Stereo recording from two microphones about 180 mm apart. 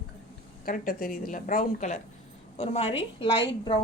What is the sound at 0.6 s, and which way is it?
A woman's voice, 50° left (ahead or behind).